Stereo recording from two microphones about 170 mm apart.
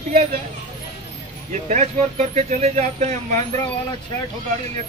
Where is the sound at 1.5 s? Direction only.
45° right (ahead or behind).